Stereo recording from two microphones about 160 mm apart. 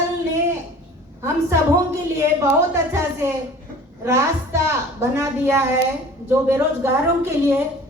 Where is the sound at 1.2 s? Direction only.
15° right (ahead or behind).